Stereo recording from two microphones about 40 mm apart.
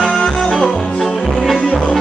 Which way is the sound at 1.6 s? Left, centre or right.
Left.